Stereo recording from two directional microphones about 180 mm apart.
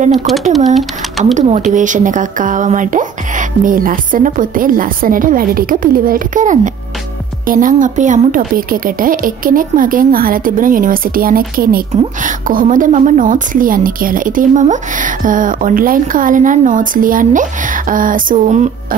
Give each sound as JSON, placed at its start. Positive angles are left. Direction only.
{"t": 0.3, "sound": "speech", "side_deg": 0}
{"t": 1.3, "sound": "a woman's voice", "side_deg": -40}